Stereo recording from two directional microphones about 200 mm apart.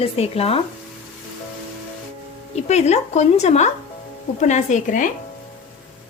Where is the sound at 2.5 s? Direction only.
35° left (ahead or behind).